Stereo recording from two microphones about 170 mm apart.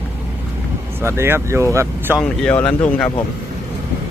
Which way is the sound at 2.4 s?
5° left (ahead or behind).